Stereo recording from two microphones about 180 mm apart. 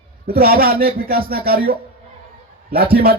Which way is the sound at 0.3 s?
55° right (ahead or behind).